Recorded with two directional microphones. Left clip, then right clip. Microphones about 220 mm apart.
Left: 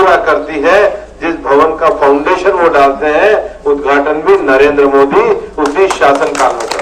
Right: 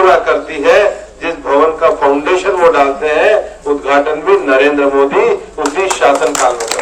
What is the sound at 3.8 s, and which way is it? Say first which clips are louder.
A man's voice: right 1 dB; 25° left (ahead or behind).